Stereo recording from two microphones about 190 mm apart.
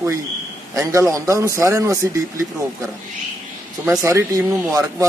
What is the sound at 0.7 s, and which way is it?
Speech, 15° right (ahead or behind).